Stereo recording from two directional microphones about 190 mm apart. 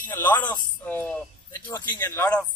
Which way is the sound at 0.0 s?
10° left (ahead or behind).